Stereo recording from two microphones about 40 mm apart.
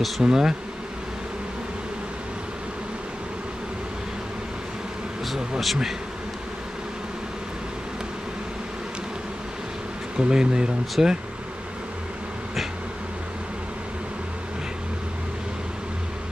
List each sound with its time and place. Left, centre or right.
0.2 s speech: centre
10.1 s speech: centre